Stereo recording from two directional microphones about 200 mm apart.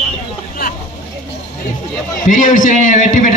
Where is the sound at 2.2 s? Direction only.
40° left (ahead or behind).